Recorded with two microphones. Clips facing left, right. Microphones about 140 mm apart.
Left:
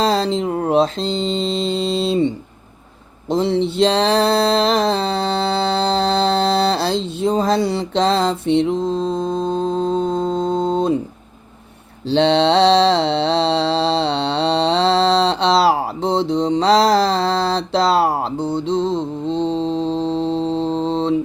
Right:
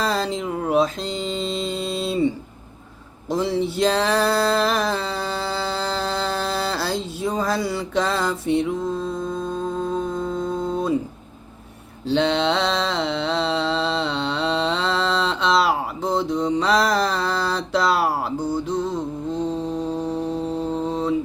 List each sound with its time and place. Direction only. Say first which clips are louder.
0.0 s mantra: left 6 dB; 30° left (ahead or behind)
3.2 s music: left 4 dB; 25° left (ahead or behind)
12.0 s mantra: left 5 dB; 30° left (ahead or behind)